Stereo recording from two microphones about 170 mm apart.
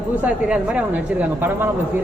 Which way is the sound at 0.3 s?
5° right (ahead or behind).